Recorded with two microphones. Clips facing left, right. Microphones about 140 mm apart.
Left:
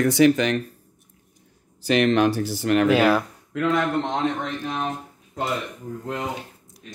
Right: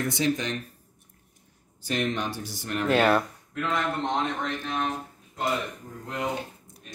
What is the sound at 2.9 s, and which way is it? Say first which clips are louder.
Speech: left 3 dB; 5° left (ahead or behind).